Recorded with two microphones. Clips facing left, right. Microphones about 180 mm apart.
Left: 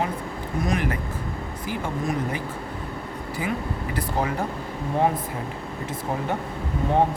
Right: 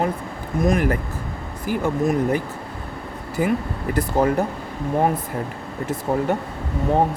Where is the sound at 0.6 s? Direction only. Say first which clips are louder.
Right 7 dB; 50° right (ahead or behind).